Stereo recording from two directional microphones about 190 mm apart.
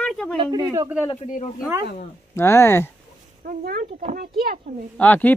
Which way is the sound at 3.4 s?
50° right (ahead or behind).